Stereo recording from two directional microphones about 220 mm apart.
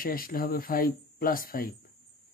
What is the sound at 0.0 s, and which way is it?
Speech, 40° left (ahead or behind).